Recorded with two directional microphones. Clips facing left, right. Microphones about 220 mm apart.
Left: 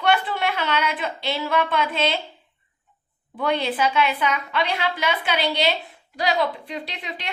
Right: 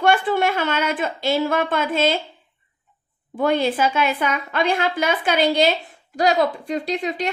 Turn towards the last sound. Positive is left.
turn(degrees=-45)  # may be behind; listen again after turning